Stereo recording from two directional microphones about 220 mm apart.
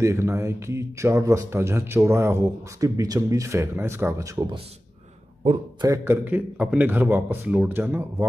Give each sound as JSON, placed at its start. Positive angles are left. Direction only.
{"t": 0.0, "sound": "speech", "side_deg": -10}
{"t": 5.4, "sound": "a man's voice", "side_deg": -30}
{"t": 5.9, "sound": "speech", "side_deg": -10}